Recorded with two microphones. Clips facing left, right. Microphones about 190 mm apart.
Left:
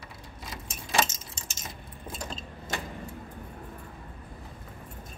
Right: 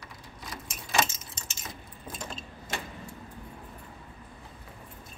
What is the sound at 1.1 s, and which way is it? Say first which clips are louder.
Keys jangling: left 2 dB; 40° left (ahead or behind).